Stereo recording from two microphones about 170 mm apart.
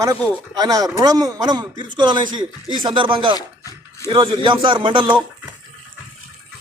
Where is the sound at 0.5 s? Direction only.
20° right (ahead or behind).